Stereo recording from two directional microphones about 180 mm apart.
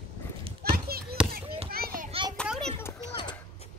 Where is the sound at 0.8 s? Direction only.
60° right (ahead or behind).